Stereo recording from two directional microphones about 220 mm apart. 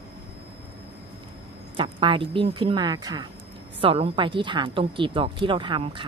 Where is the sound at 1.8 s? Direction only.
25° right (ahead or behind).